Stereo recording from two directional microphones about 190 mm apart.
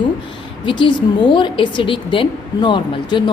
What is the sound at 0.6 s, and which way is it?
A woman's voice, 25° left (ahead or behind).